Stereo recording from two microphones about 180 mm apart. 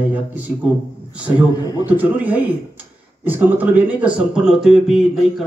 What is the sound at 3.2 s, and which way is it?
Speech, 10° right (ahead or behind).